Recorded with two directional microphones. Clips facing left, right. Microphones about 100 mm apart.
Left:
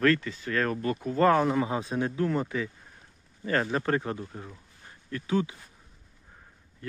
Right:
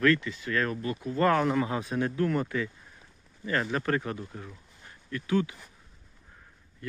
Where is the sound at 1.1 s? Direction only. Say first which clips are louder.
Left 2 dB; 30° left (ahead or behind).